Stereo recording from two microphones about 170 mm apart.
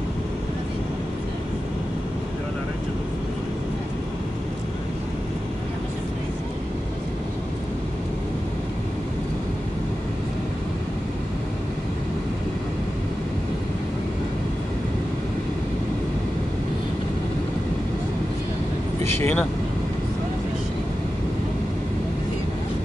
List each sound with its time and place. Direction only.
19.1 s speech: 5° left (ahead or behind)